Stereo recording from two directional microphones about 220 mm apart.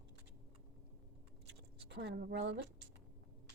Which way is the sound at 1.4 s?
50° right (ahead or behind).